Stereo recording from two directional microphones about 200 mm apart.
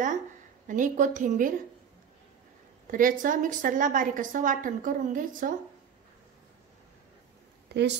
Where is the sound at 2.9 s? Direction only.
40° right (ahead or behind).